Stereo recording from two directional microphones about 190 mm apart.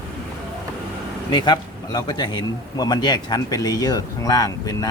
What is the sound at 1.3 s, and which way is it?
A man's voice, 20° left (ahead or behind).